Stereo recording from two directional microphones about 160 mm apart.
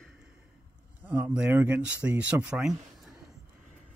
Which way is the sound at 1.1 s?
10° right (ahead or behind).